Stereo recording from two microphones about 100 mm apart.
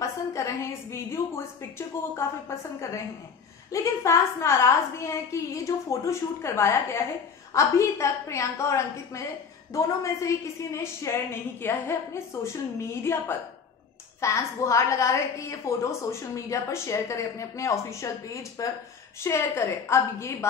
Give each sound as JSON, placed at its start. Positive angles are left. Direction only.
{"t": 0.0, "sound": "a woman's voice", "side_deg": 30}